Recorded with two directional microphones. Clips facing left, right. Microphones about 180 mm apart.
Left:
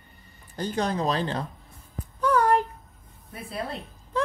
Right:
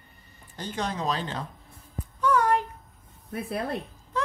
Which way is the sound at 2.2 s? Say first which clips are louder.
Left 2 dB; 35° left (ahead or behind).